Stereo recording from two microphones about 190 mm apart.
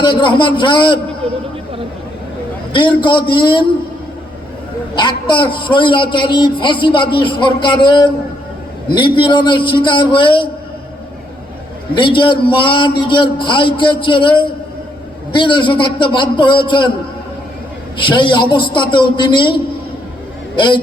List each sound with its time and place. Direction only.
0.0 s a man's voice: 25° left (ahead or behind)
1.2 s speech: 30° right (ahead or behind)
2.7 s a man's voice: 25° left (ahead or behind)
4.9 s a man's voice: 25° left (ahead or behind)
11.9 s a man's voice: 25° left (ahead or behind)
18.0 s a man's voice: 25° left (ahead or behind)
20.6 s a man's voice: 25° left (ahead or behind)